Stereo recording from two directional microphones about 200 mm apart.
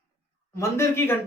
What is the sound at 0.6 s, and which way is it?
Speech, 15° left (ahead or behind).